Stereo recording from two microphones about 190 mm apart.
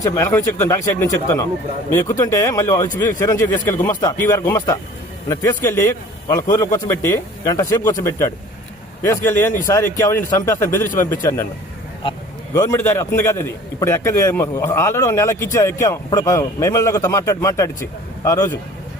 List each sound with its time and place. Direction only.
0.0 s a man's voice: 15° left (ahead or behind)
12.5 s a man's voice: 15° left (ahead or behind)